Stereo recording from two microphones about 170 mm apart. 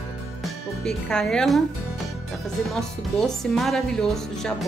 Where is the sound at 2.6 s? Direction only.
Centre (ahead or behind).